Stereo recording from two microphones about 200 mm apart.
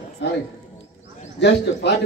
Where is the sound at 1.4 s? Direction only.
60° left (ahead or behind).